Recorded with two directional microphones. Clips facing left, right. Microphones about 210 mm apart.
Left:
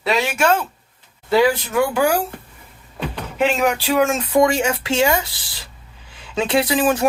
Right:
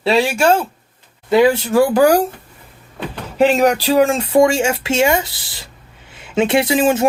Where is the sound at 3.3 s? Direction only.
35° right (ahead or behind).